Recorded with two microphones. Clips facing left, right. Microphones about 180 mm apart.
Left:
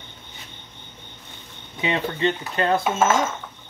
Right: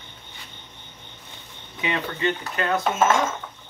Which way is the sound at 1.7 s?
25° left (ahead or behind).